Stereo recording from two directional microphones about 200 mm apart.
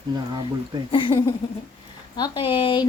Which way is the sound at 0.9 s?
25° left (ahead or behind).